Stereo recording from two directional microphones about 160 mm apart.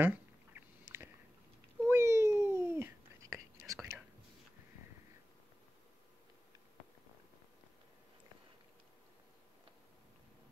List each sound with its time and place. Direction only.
0.0 s duck: 15° right (ahead or behind)
1.9 s whispering: 15° right (ahead or behind)